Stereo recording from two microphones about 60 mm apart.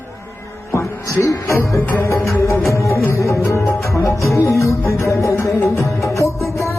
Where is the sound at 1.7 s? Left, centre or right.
Left.